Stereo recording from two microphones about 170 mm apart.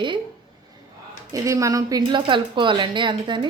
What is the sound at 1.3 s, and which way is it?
A woman's voice, 20° right (ahead or behind).